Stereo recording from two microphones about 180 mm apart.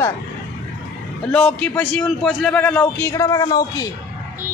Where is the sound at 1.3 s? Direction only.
5° left (ahead or behind).